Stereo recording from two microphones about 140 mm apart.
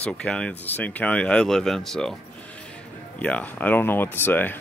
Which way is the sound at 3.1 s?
10° left (ahead or behind).